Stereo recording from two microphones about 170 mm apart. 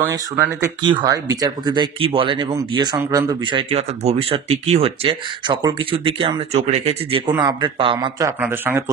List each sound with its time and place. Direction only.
0.8 s speech: 20° right (ahead or behind)
8.4 s speech: 10° right (ahead or behind)